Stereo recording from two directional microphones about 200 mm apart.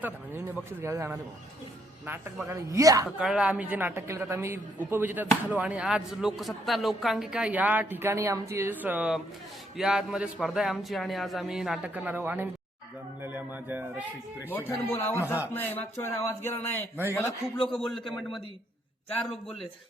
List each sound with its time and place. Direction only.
0.0 s a man's voice: 10° right (ahead or behind)
3.2 s a man's voice: 5° right (ahead or behind)
14.5 s speech: 10° left (ahead or behind)
17.7 s a man's voice: centre (ahead or behind)